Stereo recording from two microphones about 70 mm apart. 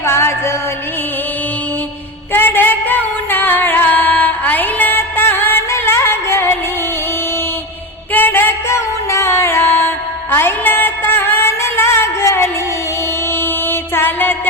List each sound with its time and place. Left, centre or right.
0.0 s music: left
2.3 s singing: left
8.1 s music: left
9.0 s music: left